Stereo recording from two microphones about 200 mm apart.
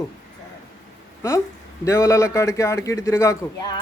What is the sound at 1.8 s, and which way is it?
A man's voice, 15° left (ahead or behind).